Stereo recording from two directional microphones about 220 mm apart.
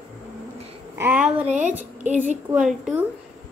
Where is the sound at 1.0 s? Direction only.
5° right (ahead or behind).